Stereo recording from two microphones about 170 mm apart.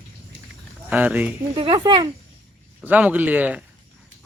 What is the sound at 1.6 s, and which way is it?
Speech, 30° right (ahead or behind).